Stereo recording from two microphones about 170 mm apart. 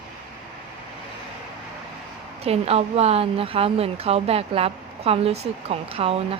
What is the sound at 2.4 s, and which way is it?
A woman's voice, 35° right (ahead or behind).